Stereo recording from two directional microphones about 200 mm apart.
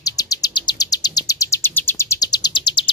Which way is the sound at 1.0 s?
20° left (ahead or behind).